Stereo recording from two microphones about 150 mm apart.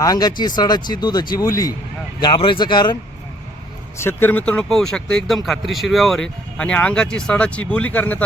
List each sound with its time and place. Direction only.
0.0 s speech: 25° left (ahead or behind)
3.9 s speech: 15° left (ahead or behind)